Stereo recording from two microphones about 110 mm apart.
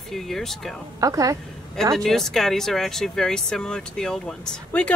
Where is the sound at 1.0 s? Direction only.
30° right (ahead or behind).